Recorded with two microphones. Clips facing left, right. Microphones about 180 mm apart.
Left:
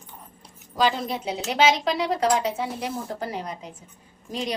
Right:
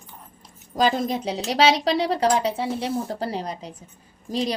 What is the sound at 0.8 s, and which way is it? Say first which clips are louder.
Speech: right 2 dB; 45° right (ahead or behind).